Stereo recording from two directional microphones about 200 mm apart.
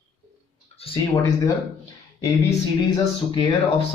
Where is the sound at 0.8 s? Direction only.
30° left (ahead or behind).